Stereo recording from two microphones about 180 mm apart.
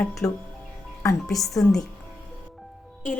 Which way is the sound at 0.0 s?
Centre (ahead or behind).